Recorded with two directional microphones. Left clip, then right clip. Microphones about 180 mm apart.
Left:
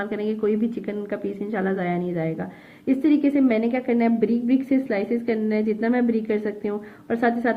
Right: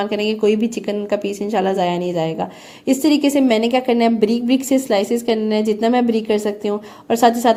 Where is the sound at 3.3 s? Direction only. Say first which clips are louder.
Right 6 dB; 25° right (ahead or behind).